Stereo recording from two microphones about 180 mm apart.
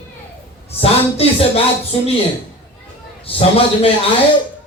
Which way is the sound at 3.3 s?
30° left (ahead or behind).